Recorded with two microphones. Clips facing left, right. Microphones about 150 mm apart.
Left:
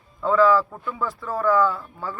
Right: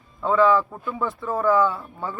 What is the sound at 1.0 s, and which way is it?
Speech, 20° right (ahead or behind).